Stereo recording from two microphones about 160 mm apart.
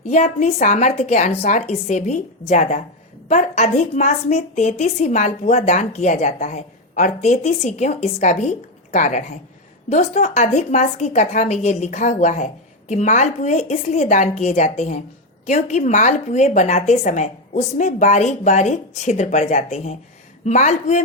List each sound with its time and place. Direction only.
0.1 s a woman's voice: 45° left (ahead or behind)